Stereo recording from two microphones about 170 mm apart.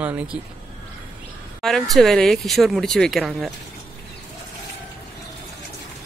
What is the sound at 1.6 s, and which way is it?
Speech, centre (ahead or behind).